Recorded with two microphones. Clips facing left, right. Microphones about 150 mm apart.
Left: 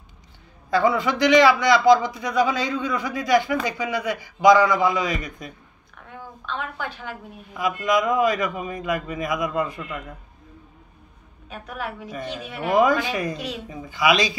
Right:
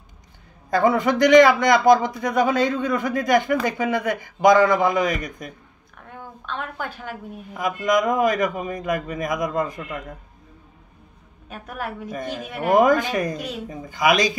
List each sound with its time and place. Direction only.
0.7 s a man's voice: 50° right (ahead or behind)
7.1 s a man's voice: 45° right (ahead or behind)
11.4 s a man's voice: 45° right (ahead or behind)